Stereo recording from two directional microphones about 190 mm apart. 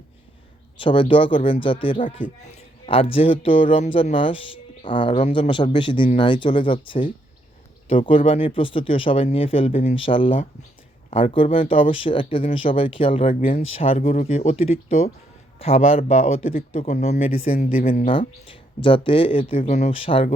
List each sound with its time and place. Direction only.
0.8 s speech: 25° left (ahead or behind)
17.3 s speech: 50° left (ahead or behind)
18.8 s speech: 25° left (ahead or behind)